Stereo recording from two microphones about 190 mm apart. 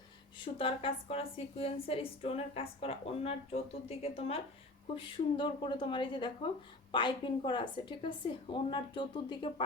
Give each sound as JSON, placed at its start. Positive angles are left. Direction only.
{"t": 0.3, "sound": "a woman's voice", "side_deg": 25}